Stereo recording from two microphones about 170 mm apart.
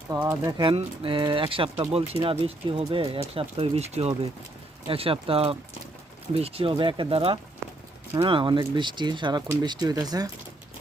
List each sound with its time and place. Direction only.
0.1 s speech: 20° right (ahead or behind)
7.6 s a sound: 15° right (ahead or behind)
8.1 s speech: 30° right (ahead or behind)